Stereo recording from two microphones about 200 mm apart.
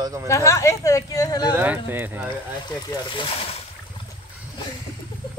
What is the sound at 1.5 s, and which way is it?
Speech, 10° right (ahead or behind).